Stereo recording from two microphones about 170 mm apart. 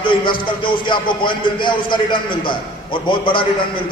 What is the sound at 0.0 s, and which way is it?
Speech, 30° left (ahead or behind).